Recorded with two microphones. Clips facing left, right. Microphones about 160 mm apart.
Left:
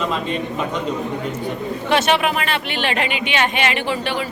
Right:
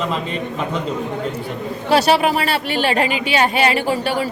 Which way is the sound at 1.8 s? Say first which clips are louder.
Right 3 dB; 35° right (ahead or behind).